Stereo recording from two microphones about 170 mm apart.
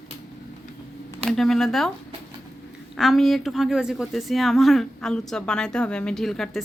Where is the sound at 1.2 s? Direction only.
Centre (ahead or behind).